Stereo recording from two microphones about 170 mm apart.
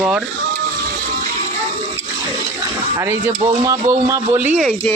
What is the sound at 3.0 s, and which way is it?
Speech, 15° right (ahead or behind).